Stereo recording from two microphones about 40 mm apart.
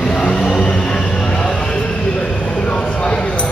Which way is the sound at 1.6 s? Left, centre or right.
Left.